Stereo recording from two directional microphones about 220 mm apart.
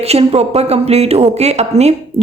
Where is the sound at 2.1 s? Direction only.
25° right (ahead or behind).